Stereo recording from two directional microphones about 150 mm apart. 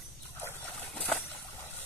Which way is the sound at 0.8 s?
5° left (ahead or behind).